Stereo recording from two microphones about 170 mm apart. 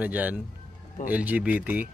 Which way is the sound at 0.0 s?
10° right (ahead or behind).